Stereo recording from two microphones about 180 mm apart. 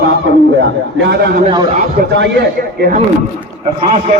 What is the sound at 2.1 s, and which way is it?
Speech, 80° right.